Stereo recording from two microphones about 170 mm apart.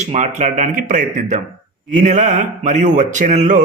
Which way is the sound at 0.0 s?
45° right (ahead or behind).